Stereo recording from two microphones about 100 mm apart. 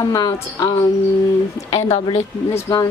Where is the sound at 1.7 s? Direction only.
90° left.